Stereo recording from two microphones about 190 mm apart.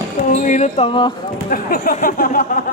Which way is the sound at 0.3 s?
45° left (ahead or behind).